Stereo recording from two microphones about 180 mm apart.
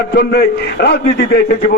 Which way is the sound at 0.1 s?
60° left (ahead or behind).